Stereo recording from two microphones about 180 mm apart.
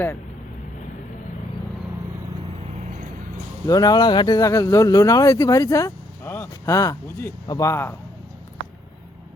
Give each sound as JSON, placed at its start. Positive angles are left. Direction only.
{"t": 3.7, "sound": "speech", "side_deg": 20}